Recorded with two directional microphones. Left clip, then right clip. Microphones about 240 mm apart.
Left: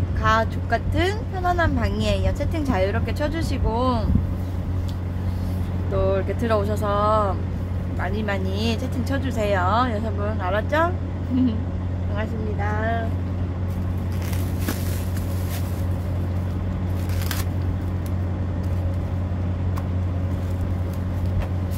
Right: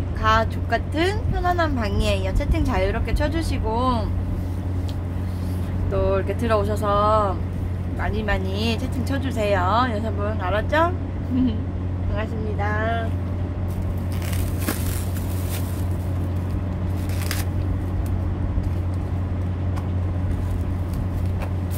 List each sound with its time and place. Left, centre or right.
0.2 s speech: centre
5.9 s speech: centre
12.2 s speech: centre